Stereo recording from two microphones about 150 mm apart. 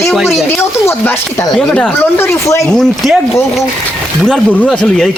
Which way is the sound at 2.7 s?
5° left (ahead or behind).